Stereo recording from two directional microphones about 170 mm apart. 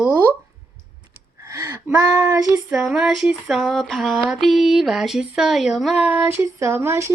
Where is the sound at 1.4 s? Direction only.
15° right (ahead or behind).